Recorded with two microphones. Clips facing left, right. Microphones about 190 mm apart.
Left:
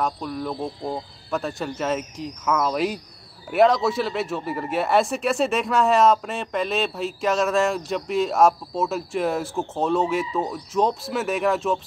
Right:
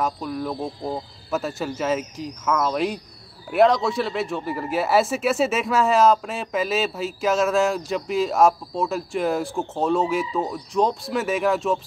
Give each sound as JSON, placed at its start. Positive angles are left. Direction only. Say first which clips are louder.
{"t": 0.0, "sound": "speech", "louder": "right 1 dB", "side_deg": 0}